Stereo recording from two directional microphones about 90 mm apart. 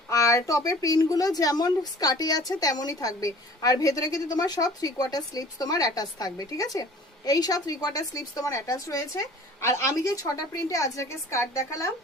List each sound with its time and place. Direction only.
0.1 s a woman's voice: 35° left (ahead or behind)